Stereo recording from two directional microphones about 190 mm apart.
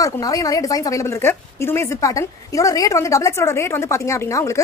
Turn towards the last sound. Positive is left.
turn(degrees=15)  # may be behind; listen again after turning